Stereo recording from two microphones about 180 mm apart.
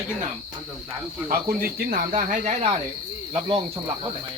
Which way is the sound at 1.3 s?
55° right (ahead or behind).